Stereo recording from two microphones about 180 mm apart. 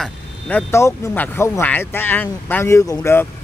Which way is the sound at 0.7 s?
15° left (ahead or behind).